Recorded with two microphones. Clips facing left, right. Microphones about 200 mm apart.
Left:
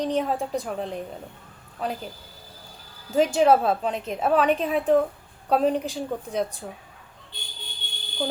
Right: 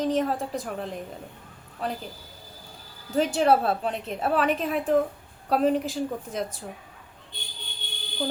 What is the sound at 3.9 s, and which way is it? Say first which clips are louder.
Speech: left 3 dB; centre (ahead or behind).